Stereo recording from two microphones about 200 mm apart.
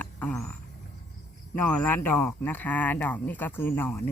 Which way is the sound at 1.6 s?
5° left (ahead or behind).